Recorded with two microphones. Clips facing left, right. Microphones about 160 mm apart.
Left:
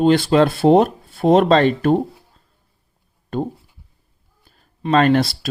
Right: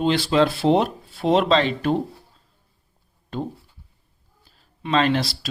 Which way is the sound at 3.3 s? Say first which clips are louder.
Left 5 dB; 50° left (ahead or behind).